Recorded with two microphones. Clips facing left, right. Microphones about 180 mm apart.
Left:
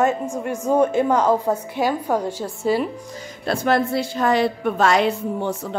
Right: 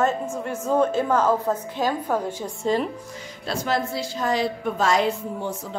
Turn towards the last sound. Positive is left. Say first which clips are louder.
# left 5 dB
turn(degrees=70)  # may be behind; listen again after turning